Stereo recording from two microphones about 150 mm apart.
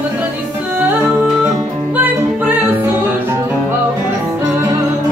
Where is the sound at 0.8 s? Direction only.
10° right (ahead or behind).